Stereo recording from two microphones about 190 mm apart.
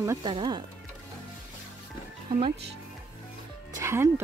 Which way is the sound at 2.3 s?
25° right (ahead or behind).